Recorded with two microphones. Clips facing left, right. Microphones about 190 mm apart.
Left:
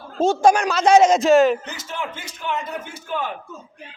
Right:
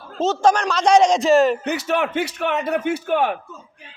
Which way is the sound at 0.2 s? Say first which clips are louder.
Left 1 dB; 10° left (ahead or behind).